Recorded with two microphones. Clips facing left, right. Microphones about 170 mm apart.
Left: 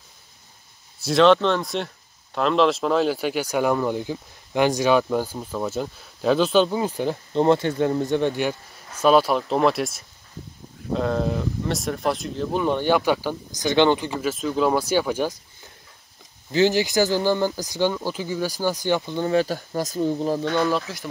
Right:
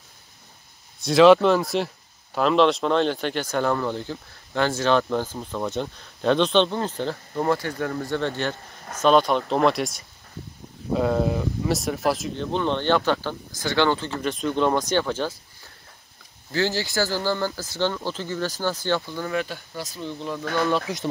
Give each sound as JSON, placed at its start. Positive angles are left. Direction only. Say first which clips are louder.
{"t": 1.0, "sound": "speech", "louder": "right 2 dB", "side_deg": -5}
{"t": 7.3, "sound": "speech", "louder": "left 6 dB", "side_deg": 25}
{"t": 14.2, "sound": "speech", "louder": "right 1 dB", "side_deg": 5}
{"t": 19.4, "sound": "speech", "louder": "left 8 dB", "side_deg": 40}
{"t": 20.9, "sound": "speech", "louder": "right 5 dB", "side_deg": -15}